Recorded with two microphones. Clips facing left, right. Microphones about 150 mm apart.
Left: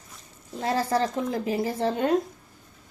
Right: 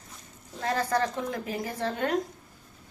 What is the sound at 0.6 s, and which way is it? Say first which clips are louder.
A woman's voice: left 2 dB; 30° left (ahead or behind).